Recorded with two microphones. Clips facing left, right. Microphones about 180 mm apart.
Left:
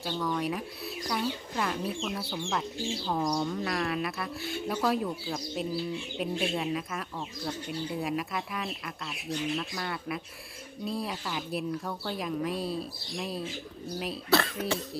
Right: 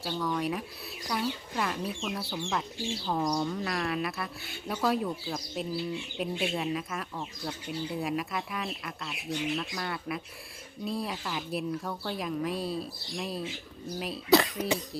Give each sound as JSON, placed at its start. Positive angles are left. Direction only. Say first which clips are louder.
{"t": 0.0, "sound": "speech", "louder": "even", "side_deg": 0}
{"t": 14.3, "sound": "speech", "louder": "right 4 dB", "side_deg": -15}